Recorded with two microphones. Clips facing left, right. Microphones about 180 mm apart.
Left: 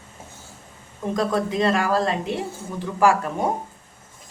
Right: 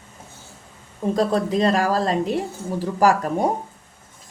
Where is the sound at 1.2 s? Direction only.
35° right (ahead or behind).